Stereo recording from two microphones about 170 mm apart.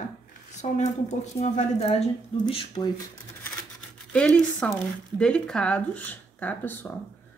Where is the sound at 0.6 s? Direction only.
40° left (ahead or behind).